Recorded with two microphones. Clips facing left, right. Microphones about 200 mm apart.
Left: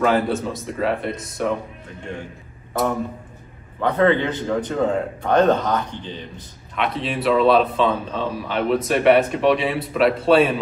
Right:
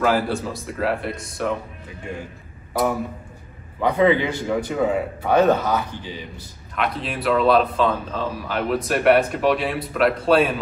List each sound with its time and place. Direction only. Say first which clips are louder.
0.0 s a man's voice: left 2 dB; centre (ahead or behind)
2.7 s speech: even; centre (ahead or behind)
3.8 s a man's voice: even; 10° right (ahead or behind)